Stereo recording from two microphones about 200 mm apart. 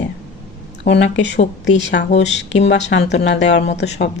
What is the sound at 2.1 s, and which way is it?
Speech, 35° left (ahead or behind).